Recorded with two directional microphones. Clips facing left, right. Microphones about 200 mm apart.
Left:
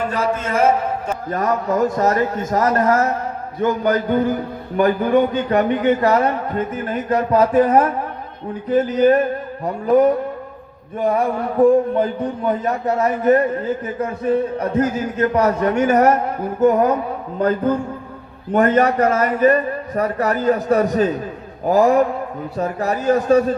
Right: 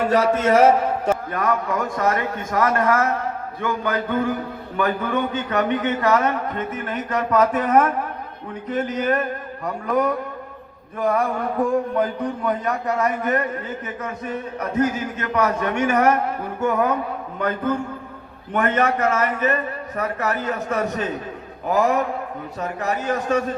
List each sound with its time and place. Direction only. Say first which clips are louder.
1.3 s a man's voice: left 3 dB; 40° left (ahead or behind)
18.5 s a man's voice: left 5 dB; 35° left (ahead or behind)